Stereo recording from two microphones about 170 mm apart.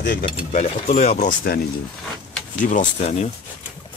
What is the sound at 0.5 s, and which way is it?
Speech, 40° left (ahead or behind).